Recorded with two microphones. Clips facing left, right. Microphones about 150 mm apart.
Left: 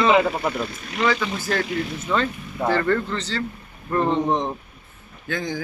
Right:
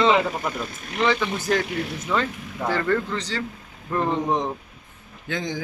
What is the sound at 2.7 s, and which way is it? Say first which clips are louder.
A man's voice: left 1 dB; 15° right (ahead or behind).